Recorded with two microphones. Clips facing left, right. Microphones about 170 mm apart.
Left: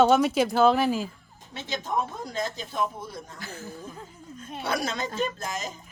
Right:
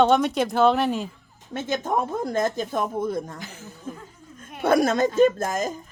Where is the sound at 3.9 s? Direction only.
50° right (ahead or behind).